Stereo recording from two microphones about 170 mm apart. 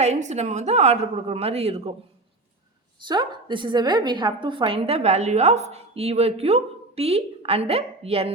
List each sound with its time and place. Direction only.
0.0 s a woman's voice: 40° right (ahead or behind)
3.1 s a woman's voice: 25° right (ahead or behind)